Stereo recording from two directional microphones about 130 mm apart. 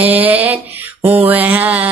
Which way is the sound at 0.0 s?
10° right (ahead or behind).